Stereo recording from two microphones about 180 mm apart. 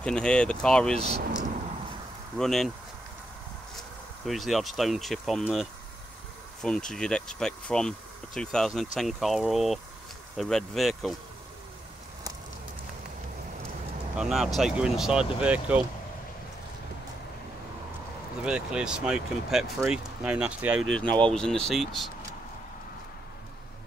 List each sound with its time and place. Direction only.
0.0 s speech: 5° left (ahead or behind)
0.9 s speech: 35° right (ahead or behind)
2.3 s speech: centre (ahead or behind)
4.3 s speech: centre (ahead or behind)
6.9 s speech: 5° left (ahead or behind)
14.1 s speech: 5° right (ahead or behind)
18.4 s speech: 5° right (ahead or behind)